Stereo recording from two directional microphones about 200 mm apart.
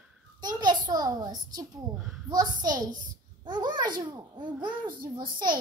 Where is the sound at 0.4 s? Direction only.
20° right (ahead or behind).